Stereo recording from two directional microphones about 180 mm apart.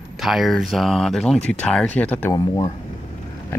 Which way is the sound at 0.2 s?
Centre (ahead or behind).